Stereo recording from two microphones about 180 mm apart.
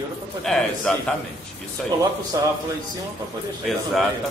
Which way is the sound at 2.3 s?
20° right (ahead or behind).